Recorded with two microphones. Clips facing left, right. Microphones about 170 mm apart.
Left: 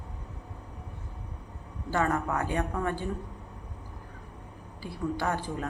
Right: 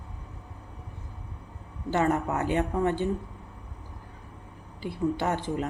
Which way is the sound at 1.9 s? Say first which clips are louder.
Right 3 dB; 20° right (ahead or behind).